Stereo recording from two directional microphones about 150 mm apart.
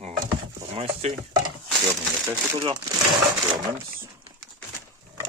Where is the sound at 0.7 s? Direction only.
40° right (ahead or behind).